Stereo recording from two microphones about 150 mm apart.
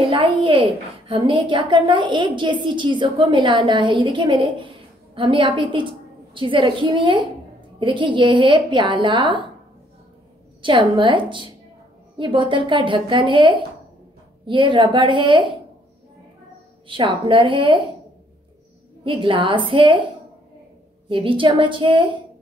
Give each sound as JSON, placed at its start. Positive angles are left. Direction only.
{"t": 0.0, "sound": "a woman's voice", "side_deg": -35}
{"t": 10.6, "sound": "a woman's voice", "side_deg": -35}
{"t": 16.8, "sound": "a woman's voice", "side_deg": -35}
{"t": 19.0, "sound": "a woman's voice", "side_deg": -35}
{"t": 21.1, "sound": "a woman's voice", "side_deg": -35}